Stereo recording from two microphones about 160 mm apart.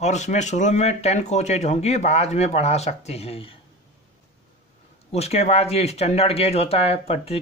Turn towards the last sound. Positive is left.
turn(degrees=40)  # may be behind; listen again after turning